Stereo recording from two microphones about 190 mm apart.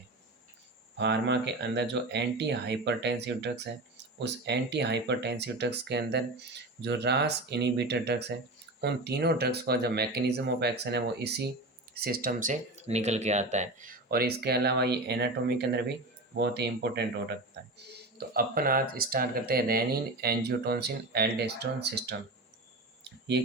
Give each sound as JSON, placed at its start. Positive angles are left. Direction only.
{"t": 0.9, "sound": "speech", "side_deg": -65}